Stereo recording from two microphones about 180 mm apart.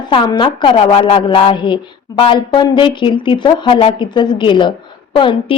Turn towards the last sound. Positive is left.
turn(degrees=30)  # may be behind; listen again after turning